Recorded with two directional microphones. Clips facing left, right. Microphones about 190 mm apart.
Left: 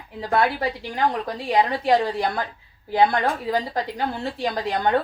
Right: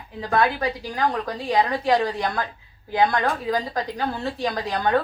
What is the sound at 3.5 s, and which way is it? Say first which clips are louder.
Speech: even; 25° left (ahead or behind).